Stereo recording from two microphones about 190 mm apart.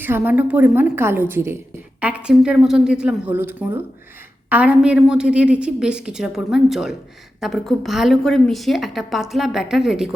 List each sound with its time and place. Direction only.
0.0 s a woman's voice: 10° right (ahead or behind)